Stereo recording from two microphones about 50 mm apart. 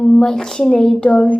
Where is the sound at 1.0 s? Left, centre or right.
Left.